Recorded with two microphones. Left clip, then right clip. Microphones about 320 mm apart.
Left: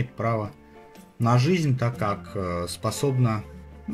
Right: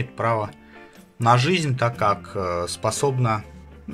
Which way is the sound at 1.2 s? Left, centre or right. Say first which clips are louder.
Right 5 dB; right.